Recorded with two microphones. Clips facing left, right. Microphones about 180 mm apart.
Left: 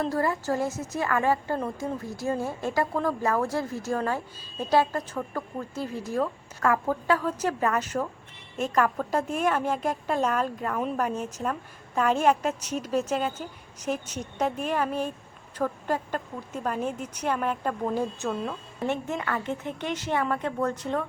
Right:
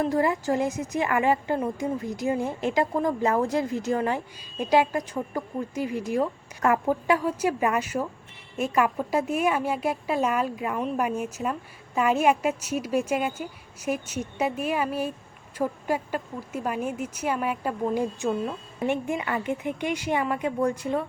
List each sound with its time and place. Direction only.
0.0 s a woman's voice: 15° right (ahead or behind)